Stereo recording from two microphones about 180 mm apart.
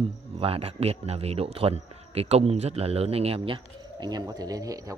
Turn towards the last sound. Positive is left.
turn(degrees=-20)  # may be behind; listen again after turning